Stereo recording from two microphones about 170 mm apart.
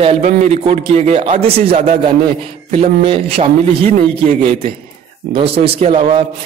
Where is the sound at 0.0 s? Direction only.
40° right (ahead or behind).